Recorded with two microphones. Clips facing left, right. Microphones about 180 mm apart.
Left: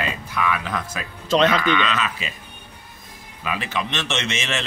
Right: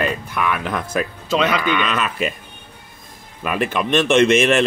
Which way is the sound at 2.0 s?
55° right (ahead or behind).